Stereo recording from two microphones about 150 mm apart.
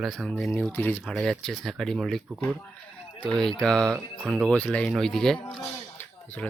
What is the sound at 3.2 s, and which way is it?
Speech, 5° left (ahead or behind).